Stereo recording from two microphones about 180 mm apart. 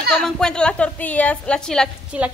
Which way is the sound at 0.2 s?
5° left (ahead or behind).